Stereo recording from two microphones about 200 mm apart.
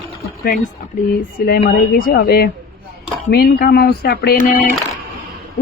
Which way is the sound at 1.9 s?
50° left (ahead or behind).